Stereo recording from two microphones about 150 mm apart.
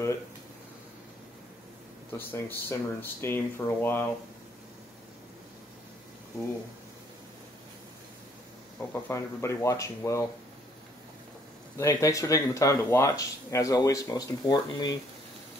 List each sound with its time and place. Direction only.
2.1 s speech: 15° left (ahead or behind)
8.7 s speech: 15° left (ahead or behind)
11.8 s speech: 20° left (ahead or behind)